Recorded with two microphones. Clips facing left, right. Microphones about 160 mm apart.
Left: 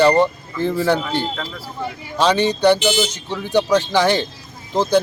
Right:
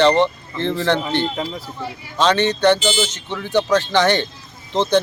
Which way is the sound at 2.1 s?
10° left (ahead or behind).